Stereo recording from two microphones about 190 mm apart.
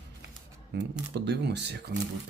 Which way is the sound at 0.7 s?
70° right (ahead or behind).